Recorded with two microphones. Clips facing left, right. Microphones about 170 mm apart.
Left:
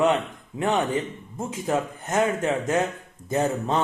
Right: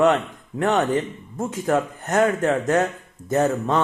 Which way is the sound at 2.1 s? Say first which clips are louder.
Right 4 dB; 45° right (ahead or behind).